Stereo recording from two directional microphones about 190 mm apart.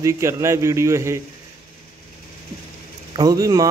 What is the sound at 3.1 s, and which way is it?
Speech, 20° right (ahead or behind).